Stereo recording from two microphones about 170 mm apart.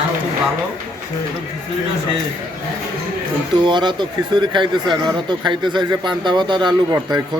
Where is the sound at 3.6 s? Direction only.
25° right (ahead or behind).